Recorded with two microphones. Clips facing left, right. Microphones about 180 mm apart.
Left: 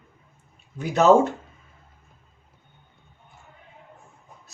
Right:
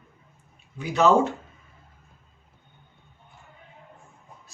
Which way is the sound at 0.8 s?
45° left (ahead or behind).